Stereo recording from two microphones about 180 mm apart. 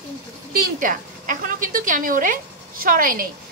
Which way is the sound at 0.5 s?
50° right (ahead or behind).